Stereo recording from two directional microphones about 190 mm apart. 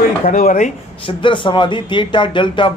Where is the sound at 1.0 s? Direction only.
25° left (ahead or behind).